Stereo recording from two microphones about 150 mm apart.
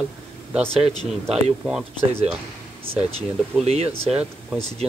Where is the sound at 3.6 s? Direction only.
40° right (ahead or behind).